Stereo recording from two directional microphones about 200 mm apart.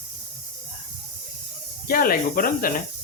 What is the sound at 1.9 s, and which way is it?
Speech, 45° left (ahead or behind).